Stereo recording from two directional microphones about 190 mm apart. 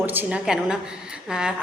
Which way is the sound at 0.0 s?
10° right (ahead or behind).